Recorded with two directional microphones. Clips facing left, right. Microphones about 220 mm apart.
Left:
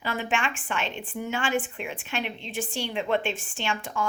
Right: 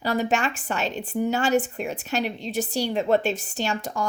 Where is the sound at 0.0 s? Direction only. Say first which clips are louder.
Right 5 dB; 40° right (ahead or behind).